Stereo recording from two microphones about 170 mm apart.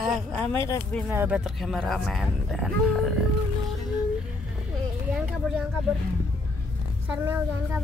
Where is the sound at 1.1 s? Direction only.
10° right (ahead or behind).